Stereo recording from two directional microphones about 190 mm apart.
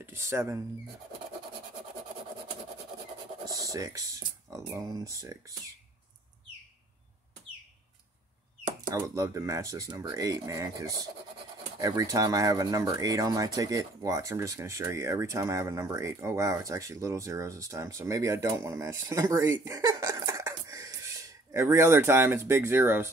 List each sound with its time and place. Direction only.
0.0 s speech: 15° right (ahead or behind)
3.4 s speech: 20° right (ahead or behind)
8.9 s speech: 15° right (ahead or behind)